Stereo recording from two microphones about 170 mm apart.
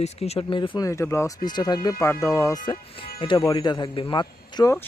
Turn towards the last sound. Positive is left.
turn(degrees=20)  # may be behind; listen again after turning